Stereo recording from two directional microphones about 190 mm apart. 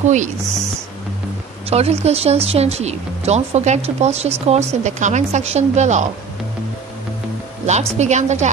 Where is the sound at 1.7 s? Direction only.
35° right (ahead or behind).